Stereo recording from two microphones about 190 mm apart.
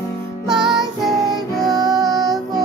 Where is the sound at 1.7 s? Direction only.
20° right (ahead or behind).